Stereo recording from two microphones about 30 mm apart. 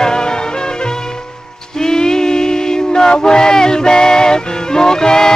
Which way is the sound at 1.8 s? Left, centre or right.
Left.